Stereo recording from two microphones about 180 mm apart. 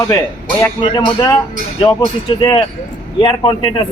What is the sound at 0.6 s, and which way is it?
Speech, 20° left (ahead or behind).